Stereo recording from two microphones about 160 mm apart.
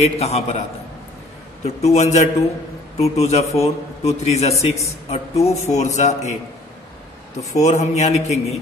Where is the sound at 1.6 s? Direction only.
45° left (ahead or behind).